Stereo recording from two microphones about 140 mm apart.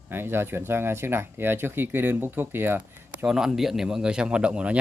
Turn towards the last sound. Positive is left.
turn(degrees=-10)  # may be behind; listen again after turning